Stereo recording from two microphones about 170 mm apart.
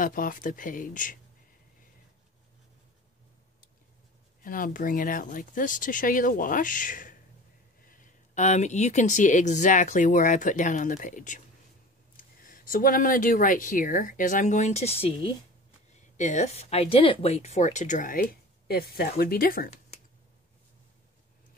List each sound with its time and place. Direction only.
0.0 s speech: 50° left (ahead or behind)
4.4 s speech: 55° left (ahead or behind); by 15.3 s 30° left (ahead or behind)
16.2 s speech: 45° left (ahead or behind)